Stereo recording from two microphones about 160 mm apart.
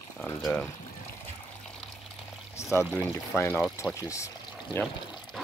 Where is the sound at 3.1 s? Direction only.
15° left (ahead or behind).